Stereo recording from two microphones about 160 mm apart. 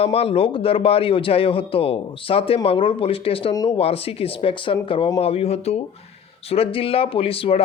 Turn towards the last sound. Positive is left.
turn(degrees=35)  # may be behind; listen again after turning